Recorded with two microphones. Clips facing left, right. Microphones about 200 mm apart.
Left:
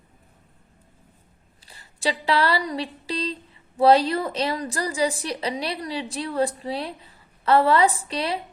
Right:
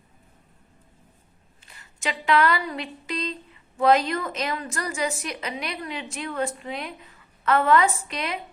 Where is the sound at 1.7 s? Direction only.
35° left (ahead or behind).